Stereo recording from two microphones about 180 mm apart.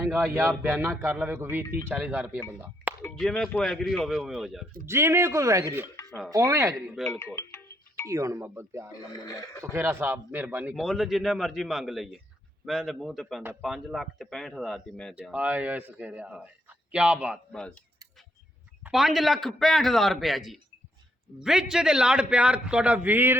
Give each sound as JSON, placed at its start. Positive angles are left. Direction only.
{"t": 0.0, "sound": "a man's voice", "side_deg": -10}
{"t": 2.8, "sound": "a sound", "side_deg": -65}
{"t": 3.2, "sound": "a man's voice", "side_deg": 0}
{"t": 4.9, "sound": "a man's voice", "side_deg": -15}
{"t": 6.1, "sound": "speech", "side_deg": 5}
{"t": 6.3, "sound": "a man's voice", "side_deg": -15}
{"t": 6.9, "sound": "a man's voice", "side_deg": 0}
{"t": 7.2, "sound": "music", "side_deg": 15}
{"t": 8.0, "sound": "a man's voice", "side_deg": -15}
{"t": 18.8, "sound": "a man's voice", "side_deg": 0}